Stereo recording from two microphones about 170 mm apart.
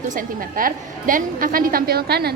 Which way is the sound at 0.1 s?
55° right (ahead or behind).